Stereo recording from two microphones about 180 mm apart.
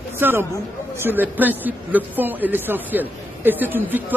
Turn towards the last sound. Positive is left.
turn(degrees=-10)  # may be behind; listen again after turning